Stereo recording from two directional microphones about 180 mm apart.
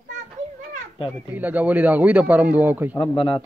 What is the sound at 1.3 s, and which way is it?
A man's voice, 10° right (ahead or behind).